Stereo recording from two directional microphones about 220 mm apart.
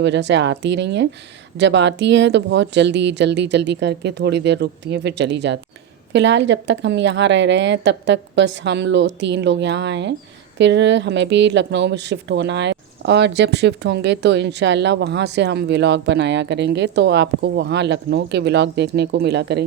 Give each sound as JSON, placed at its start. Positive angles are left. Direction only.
{"t": 0.0, "sound": "a woman's voice", "side_deg": -55}